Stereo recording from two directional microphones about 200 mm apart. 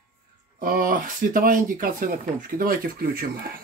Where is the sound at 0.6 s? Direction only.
45° right (ahead or behind).